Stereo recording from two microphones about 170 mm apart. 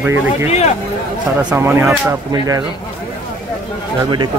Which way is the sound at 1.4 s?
10° right (ahead or behind).